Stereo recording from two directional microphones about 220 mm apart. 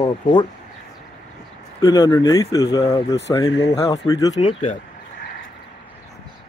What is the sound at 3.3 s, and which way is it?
Speech, 15° left (ahead or behind).